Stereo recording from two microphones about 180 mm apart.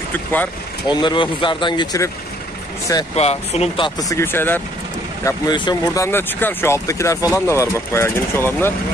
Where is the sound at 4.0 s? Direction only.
15° left (ahead or behind).